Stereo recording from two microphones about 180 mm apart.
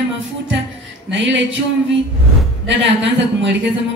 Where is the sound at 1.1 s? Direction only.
90° right.